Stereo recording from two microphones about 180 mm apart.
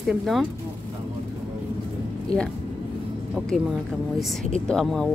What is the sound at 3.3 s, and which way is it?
Speech, 5° right (ahead or behind).